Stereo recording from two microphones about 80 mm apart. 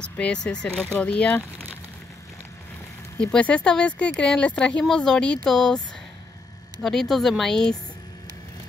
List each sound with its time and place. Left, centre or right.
0.0 s speech: centre
3.2 s speech: centre
6.8 s speech: centre